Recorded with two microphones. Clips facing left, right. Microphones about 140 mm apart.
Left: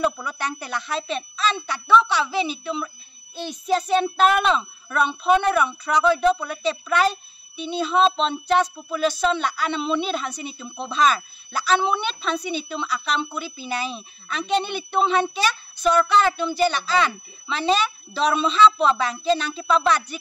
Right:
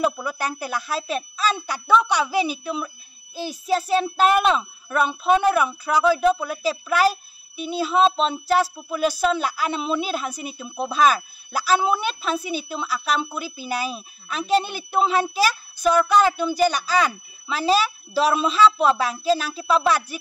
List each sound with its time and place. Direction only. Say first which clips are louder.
0.0 s a child's voice: right 1 dB; 10° right (ahead or behind)